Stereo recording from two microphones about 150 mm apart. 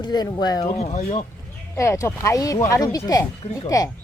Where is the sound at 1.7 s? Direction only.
20° left (ahead or behind).